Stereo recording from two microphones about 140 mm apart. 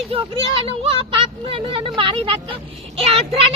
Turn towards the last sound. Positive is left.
turn(degrees=-45)  # may be behind; listen again after turning